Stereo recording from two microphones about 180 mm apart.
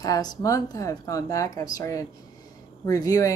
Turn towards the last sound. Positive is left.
turn(degrees=20)  # may be behind; listen again after turning